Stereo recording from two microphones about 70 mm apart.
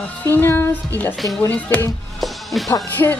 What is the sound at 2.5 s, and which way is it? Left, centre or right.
Music, centre.